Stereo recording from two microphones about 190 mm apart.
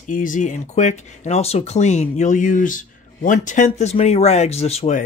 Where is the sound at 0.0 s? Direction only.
45° left (ahead or behind).